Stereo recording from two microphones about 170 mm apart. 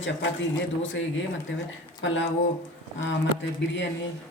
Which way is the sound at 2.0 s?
90° left.